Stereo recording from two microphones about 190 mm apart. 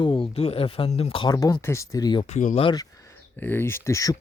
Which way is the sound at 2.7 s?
15° left (ahead or behind).